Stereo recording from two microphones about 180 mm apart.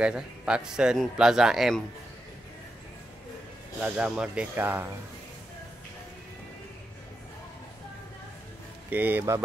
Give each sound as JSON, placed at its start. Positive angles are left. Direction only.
{"t": 0.0, "sound": "speech", "side_deg": -5}
{"t": 3.8, "sound": "speech", "side_deg": -5}
{"t": 8.9, "sound": "speech", "side_deg": -10}